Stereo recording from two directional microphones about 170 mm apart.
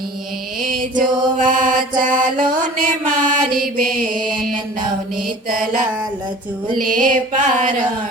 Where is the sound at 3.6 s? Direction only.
55° right (ahead or behind).